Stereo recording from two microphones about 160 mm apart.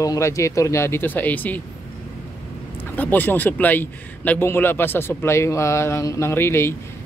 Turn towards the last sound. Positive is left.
turn(degrees=15)  # may be behind; listen again after turning